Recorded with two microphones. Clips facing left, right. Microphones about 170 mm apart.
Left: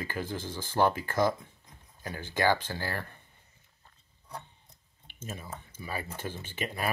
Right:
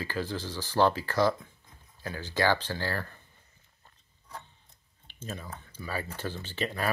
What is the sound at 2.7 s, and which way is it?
Speech, 15° left (ahead or behind).